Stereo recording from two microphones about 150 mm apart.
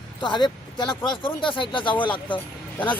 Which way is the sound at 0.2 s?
30° left (ahead or behind).